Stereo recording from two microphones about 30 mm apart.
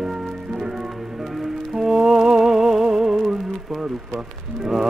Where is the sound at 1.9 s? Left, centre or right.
Centre.